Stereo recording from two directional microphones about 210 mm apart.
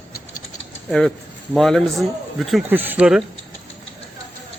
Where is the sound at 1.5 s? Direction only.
Centre (ahead or behind).